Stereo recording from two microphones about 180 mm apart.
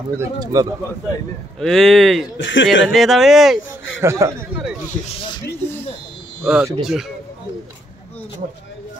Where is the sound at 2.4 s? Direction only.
90° left.